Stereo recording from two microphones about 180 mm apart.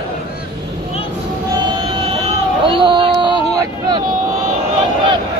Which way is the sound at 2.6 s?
25° right (ahead or behind).